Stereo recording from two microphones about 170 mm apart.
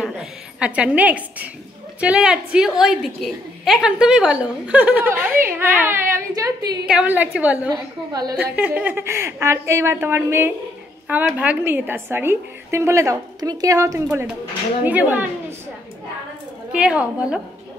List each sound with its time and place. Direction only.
0.0 s a woman's voice: 5° right (ahead or behind); by 6.8 s 20° right (ahead or behind)
6.9 s a woman's voice: 10° right (ahead or behind)
7.7 s a woman's voice: 25° right (ahead or behind)
8.4 s a woman's voice: 10° right (ahead or behind)
16.7 s a woman's voice: 5° right (ahead or behind)